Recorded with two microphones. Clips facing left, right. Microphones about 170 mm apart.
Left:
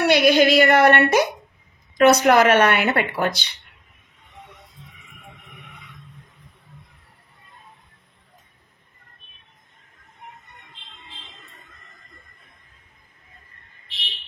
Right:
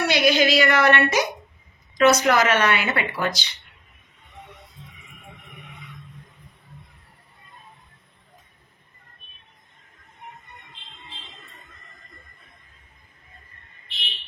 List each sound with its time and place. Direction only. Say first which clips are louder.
0.0 s a woman's voice: left 4 dB; 60° left (ahead or behind)